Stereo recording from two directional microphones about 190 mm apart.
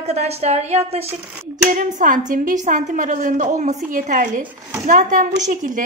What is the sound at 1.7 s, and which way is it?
A woman's voice, 45° right (ahead or behind).